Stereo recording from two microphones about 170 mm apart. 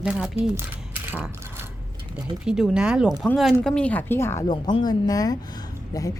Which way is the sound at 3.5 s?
5° left (ahead or behind).